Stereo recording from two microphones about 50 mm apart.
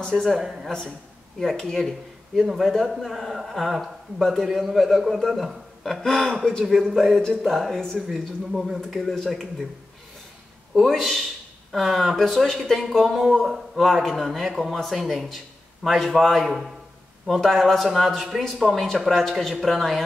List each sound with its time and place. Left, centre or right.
0.1 s speech: centre
0.4 s a woman's voice: centre
1.4 s a man's voice: centre
6.0 s a sound: centre
6.9 s speech: centre
7.2 s a sound: centre
7.5 s speech: centre
8.5 s speech: centre
10.9 s speech: centre